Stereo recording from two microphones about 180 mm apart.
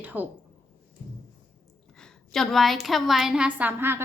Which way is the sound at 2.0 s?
Centre (ahead or behind).